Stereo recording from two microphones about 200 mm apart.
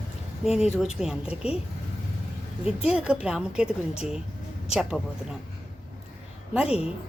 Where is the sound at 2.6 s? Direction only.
30° left (ahead or behind).